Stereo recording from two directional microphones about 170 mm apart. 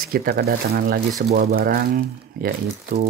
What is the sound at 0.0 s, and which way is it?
Speech, 60° right (ahead or behind).